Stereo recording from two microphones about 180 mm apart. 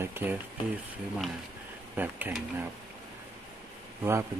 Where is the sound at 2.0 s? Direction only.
10° right (ahead or behind).